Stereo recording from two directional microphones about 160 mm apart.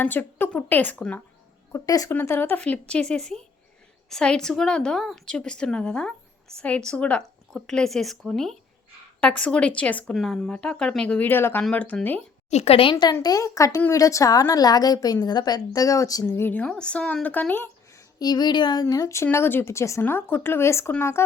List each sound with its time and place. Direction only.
0.0 s speech: 10° left (ahead or behind)
1.7 s a woman's voice: 20° left (ahead or behind)
12.5 s a woman's voice: 40° left (ahead or behind); by 21.2 s 15° left (ahead or behind)